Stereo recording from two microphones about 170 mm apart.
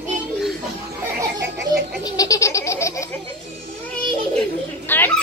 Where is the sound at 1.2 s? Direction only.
15° right (ahead or behind).